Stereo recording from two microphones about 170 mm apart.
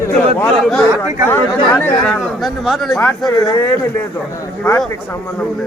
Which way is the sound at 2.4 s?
Centre (ahead or behind).